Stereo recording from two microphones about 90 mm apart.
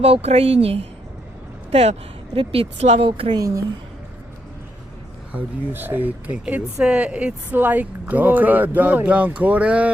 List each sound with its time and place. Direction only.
0.0 s a woman's voice: 90° right
2.3 s speech: 90° right; by 3.3 s 70° right (ahead or behind)
3.3 s a woman's voice: 40° right (ahead or behind)
5.3 s speech: 20° right (ahead or behind)